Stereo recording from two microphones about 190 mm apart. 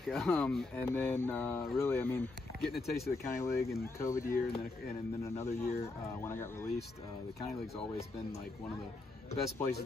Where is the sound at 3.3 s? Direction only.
15° left (ahead or behind).